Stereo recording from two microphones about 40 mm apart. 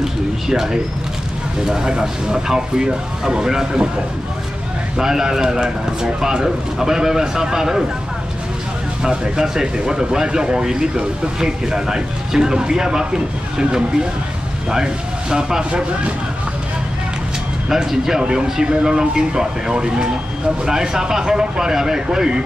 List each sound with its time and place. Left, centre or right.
0.0 s speech: centre
4.9 s speech: centre
9.0 s speech: right
17.6 s speech: centre